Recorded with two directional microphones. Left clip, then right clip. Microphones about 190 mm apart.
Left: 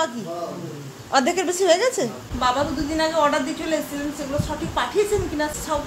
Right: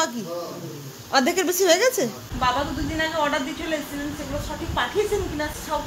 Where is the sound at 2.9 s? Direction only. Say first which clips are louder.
Left 4 dB; 5° left (ahead or behind).